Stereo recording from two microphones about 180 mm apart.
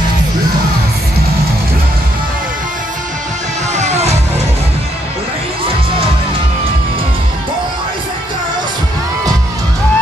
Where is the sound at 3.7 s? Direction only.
40° right (ahead or behind).